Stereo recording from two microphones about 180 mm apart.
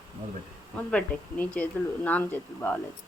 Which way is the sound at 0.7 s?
5° left (ahead or behind).